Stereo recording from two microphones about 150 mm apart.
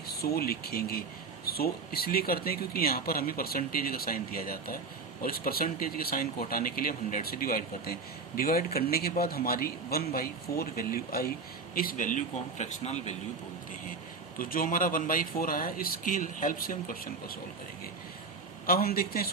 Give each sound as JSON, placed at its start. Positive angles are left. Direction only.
{"t": 0.1, "sound": "speech", "side_deg": 90}
{"t": 8.4, "sound": "speech", "side_deg": 90}
{"t": 11.7, "sound": "speech", "side_deg": 70}
{"t": 14.3, "sound": "speech", "side_deg": 70}
{"t": 18.6, "sound": "a man's voice", "side_deg": 85}